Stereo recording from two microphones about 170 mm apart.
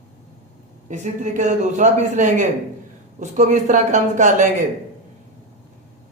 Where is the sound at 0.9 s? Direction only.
45° right (ahead or behind).